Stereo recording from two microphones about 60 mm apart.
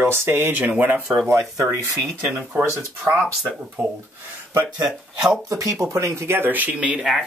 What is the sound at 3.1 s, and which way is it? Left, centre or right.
Speech, right.